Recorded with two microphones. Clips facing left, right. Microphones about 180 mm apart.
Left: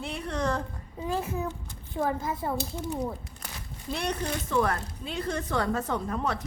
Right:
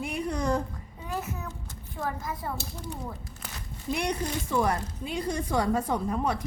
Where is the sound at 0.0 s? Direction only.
10° right (ahead or behind).